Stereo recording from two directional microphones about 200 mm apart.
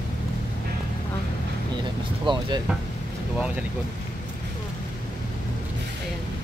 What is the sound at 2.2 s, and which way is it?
Speech, 25° right (ahead or behind).